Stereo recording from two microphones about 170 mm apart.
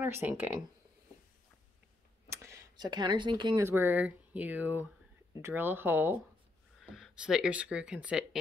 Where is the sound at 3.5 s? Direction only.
15° right (ahead or behind).